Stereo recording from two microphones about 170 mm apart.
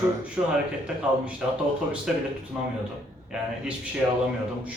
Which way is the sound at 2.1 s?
5° right (ahead or behind).